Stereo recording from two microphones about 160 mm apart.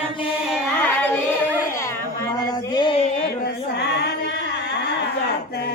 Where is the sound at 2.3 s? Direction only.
25° left (ahead or behind).